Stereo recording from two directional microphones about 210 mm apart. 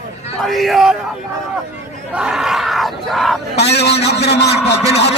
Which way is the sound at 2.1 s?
5° right (ahead or behind).